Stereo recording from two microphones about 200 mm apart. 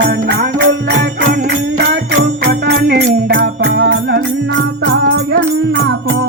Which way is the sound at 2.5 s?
50° right (ahead or behind).